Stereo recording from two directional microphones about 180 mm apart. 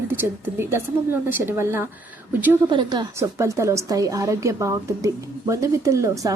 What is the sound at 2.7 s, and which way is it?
A woman's voice, 25° right (ahead or behind).